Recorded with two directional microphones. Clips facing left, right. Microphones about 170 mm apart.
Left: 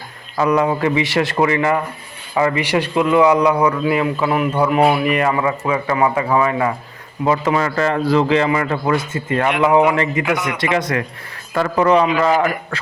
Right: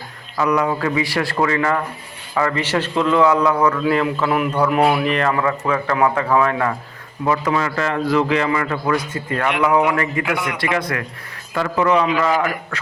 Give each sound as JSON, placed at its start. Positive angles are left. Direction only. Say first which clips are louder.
{"t": 0.3, "sound": "a man's voice", "louder": "left 2 dB", "side_deg": 25}
{"t": 5.0, "sound": "a man's voice", "louder": "left 2 dB", "side_deg": 10}
{"t": 7.3, "sound": "a man's voice", "louder": "left 2 dB", "side_deg": 25}
{"t": 7.6, "sound": "a man's voice", "louder": "left 3 dB", "side_deg": 35}
{"t": 11.5, "sound": "a man's voice", "louder": "left 3 dB", "side_deg": 40}